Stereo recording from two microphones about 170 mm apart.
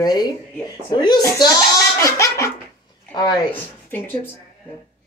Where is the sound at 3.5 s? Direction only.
10° left (ahead or behind).